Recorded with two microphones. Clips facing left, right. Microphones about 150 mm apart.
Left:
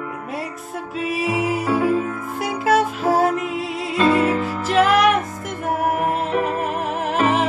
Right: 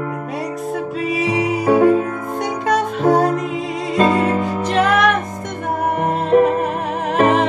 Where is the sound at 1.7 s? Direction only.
60° right (ahead or behind).